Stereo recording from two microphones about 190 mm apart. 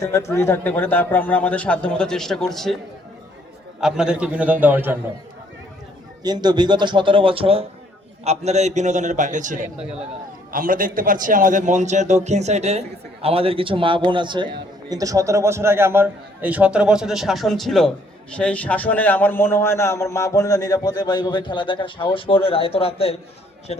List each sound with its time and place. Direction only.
0.0 s a man's voice: 15° left (ahead or behind)
3.8 s a man's voice: 5° right (ahead or behind)
6.2 s a man's voice: 20° right (ahead or behind); by 23.1 s 30° left (ahead or behind)